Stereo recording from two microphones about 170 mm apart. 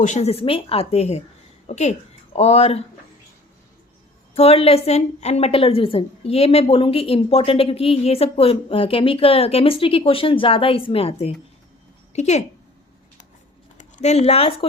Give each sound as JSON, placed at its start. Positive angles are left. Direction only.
{"t": 0.0, "sound": "a woman's voice", "side_deg": 40}
{"t": 4.4, "sound": "a woman's voice", "side_deg": 35}
{"t": 13.7, "sound": "speech", "side_deg": 45}